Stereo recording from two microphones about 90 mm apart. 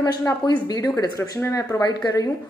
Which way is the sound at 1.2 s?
30° left (ahead or behind).